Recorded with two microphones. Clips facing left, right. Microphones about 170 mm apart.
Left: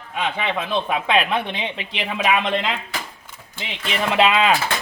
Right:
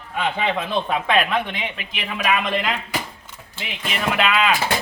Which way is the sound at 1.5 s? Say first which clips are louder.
Left 2 dB; 30° left (ahead or behind).